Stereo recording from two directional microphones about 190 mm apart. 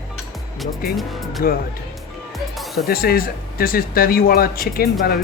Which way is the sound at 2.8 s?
50° left (ahead or behind).